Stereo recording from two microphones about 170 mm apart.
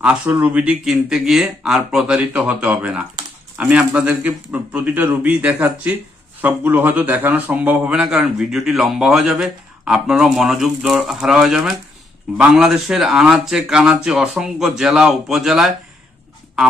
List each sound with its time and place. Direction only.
0.0 s speech: 10° right (ahead or behind)